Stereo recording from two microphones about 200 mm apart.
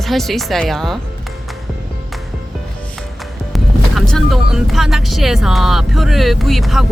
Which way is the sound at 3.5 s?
Centre (ahead or behind).